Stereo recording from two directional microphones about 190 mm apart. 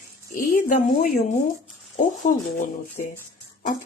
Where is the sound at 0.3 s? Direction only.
45° left (ahead or behind).